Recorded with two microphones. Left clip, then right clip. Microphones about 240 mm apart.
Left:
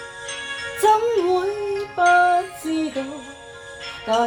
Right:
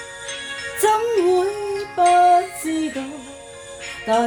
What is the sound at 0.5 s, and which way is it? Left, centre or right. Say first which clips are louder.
Music: left 1 dB; right.